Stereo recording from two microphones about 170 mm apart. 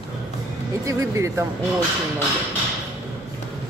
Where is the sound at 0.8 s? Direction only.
20° right (ahead or behind).